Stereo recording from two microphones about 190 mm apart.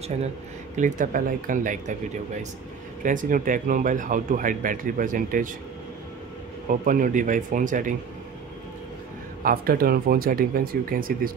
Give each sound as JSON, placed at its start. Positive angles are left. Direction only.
{"t": 0.7, "sound": "speech", "side_deg": -45}
{"t": 3.0, "sound": "speech", "side_deg": -45}
{"t": 6.7, "sound": "speech", "side_deg": -45}
{"t": 9.4, "sound": "speech", "side_deg": -50}